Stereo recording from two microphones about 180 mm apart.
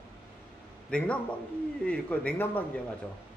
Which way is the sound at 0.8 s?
5° left (ahead or behind).